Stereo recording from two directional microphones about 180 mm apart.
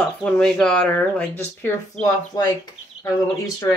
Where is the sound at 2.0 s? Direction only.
20° left (ahead or behind).